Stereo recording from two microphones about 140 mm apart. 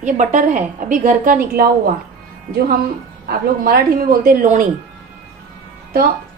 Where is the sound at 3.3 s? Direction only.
90° right; by 4.7 s 70° right (ahead or behind).